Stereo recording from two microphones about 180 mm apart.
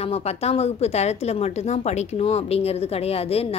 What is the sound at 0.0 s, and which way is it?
A woman's voice, 35° left (ahead or behind).